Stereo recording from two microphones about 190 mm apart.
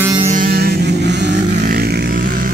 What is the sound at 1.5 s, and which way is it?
Vehicle, 50° right (ahead or behind).